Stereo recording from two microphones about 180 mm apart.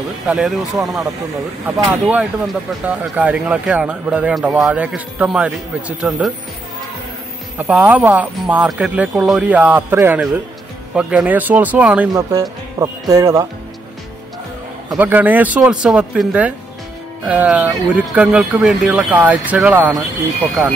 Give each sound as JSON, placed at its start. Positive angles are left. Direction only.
{"t": 0.3, "sound": "speech", "side_deg": 0}
{"t": 7.5, "sound": "speech", "side_deg": -10}
{"t": 12.1, "sound": "speech", "side_deg": -20}
{"t": 14.9, "sound": "speech", "side_deg": -10}